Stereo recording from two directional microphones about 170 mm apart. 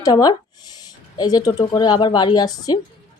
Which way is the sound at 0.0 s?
25° left (ahead or behind).